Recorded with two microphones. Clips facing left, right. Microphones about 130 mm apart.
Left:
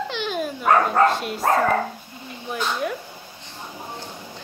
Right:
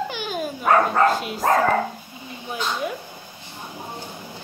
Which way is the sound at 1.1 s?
Centre (ahead or behind).